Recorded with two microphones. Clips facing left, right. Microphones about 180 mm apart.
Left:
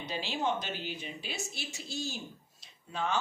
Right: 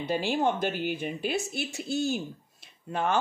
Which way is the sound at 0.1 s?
55° right (ahead or behind).